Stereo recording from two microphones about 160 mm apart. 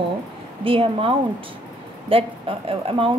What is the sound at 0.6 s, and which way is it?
A woman's voice, 35° right (ahead or behind).